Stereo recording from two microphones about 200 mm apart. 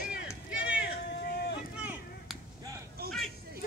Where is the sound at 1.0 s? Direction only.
55° left (ahead or behind).